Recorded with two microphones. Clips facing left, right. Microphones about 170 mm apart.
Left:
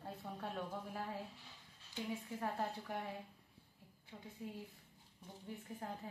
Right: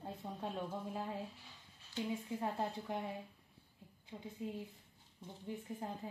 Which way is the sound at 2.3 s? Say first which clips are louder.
Even; 20° right (ahead or behind).